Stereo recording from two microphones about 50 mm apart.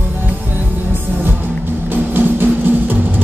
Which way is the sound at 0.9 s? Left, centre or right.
Right.